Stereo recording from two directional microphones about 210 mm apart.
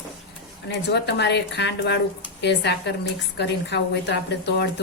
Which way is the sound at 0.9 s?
55° left (ahead or behind).